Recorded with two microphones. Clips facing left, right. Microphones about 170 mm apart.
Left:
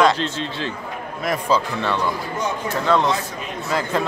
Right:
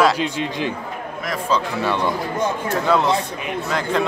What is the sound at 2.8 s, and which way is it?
Speech, 5° right (ahead or behind).